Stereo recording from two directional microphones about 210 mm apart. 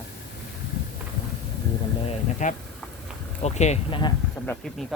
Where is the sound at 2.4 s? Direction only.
35° left (ahead or behind).